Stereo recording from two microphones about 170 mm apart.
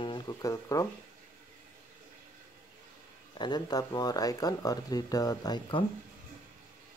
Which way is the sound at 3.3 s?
25° left (ahead or behind).